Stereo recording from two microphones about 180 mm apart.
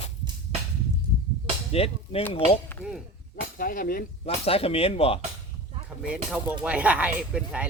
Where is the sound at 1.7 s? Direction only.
35° left (ahead or behind).